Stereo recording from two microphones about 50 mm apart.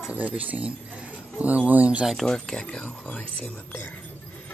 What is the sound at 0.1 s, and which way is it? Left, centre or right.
Speech, right.